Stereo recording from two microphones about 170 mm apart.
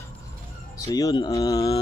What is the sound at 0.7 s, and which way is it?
Speech, 20° left (ahead or behind).